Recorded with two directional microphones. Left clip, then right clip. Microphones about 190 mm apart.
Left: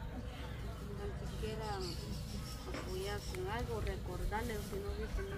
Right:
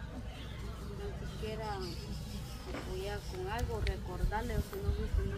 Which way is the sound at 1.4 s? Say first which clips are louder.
Right 2 dB; centre (ahead or behind).